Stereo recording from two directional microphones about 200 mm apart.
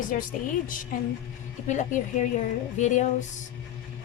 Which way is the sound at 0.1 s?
45° left (ahead or behind).